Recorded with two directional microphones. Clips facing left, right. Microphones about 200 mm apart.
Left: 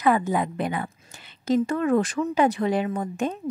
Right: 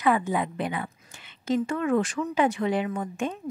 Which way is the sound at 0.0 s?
40° left (ahead or behind).